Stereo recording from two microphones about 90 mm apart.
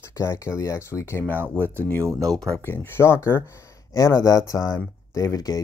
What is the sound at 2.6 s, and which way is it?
Speech, 25° left (ahead or behind).